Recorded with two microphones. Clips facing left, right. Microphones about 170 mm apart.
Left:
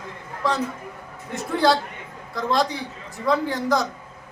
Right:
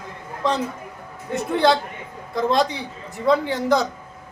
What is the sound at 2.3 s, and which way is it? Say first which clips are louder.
A man's voice: right 3 dB; 20° right (ahead or behind).